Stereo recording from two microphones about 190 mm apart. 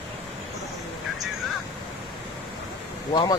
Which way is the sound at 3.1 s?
25° left (ahead or behind).